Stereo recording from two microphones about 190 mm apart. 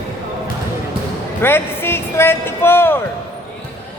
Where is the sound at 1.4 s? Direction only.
10° left (ahead or behind).